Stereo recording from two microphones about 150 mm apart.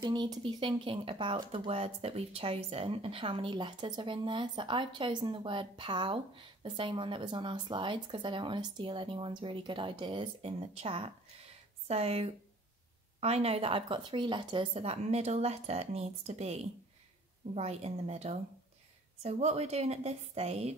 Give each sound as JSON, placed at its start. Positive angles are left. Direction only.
{"t": 0.0, "sound": "speech", "side_deg": -30}